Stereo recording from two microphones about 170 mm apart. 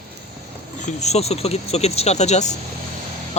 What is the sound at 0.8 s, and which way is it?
Speech, 45° left (ahead or behind).